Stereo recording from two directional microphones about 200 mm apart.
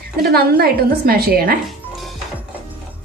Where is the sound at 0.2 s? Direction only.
50° right (ahead or behind).